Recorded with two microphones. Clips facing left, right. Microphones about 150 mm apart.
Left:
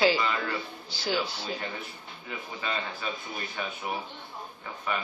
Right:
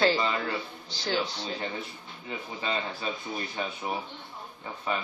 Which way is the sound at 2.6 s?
30° right (ahead or behind).